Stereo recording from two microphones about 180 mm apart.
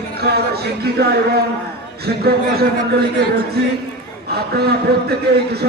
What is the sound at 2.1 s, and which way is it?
Speech, 60° right (ahead or behind).